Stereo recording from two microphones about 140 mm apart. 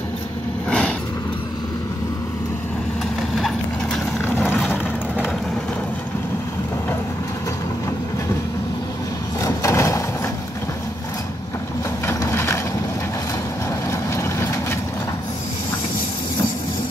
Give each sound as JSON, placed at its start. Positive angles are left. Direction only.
{"t": 0.7, "sound": "vehicle", "side_deg": 5}
{"t": 3.3, "sound": "clip-clop", "side_deg": 0}
{"t": 4.6, "sound": "vehicle", "side_deg": 10}
{"t": 9.4, "sound": "a sound", "side_deg": 20}
{"t": 12.1, "sound": "a sound", "side_deg": 20}
{"t": 13.8, "sound": "vehicle", "side_deg": 20}